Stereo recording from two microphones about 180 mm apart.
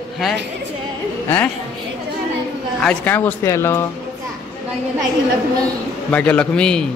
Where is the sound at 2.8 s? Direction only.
10° left (ahead or behind).